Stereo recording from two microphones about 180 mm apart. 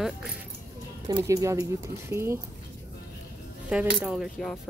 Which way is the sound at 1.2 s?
15° right (ahead or behind).